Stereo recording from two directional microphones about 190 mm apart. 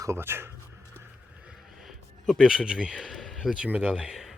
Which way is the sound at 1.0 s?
5° right (ahead or behind).